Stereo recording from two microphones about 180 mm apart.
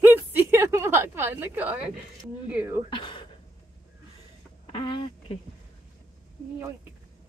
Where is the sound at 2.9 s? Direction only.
25° left (ahead or behind).